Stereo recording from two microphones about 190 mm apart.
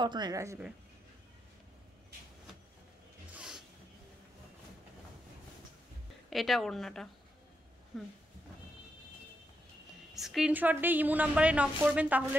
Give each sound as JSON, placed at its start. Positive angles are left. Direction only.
{"t": 0.0, "sound": "speech", "side_deg": -20}
{"t": 3.3, "sound": "a sound", "side_deg": -5}
{"t": 6.3, "sound": "a woman's voice", "side_deg": 0}
{"t": 10.1, "sound": "a woman's voice", "side_deg": 0}